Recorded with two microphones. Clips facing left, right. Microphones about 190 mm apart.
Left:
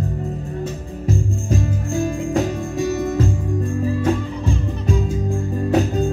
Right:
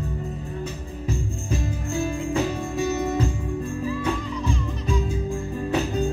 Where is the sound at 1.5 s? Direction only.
45° left (ahead or behind).